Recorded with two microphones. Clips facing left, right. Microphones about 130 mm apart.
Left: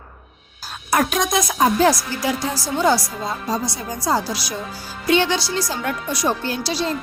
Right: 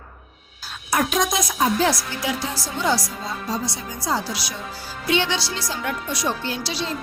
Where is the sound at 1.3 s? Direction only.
55° left (ahead or behind).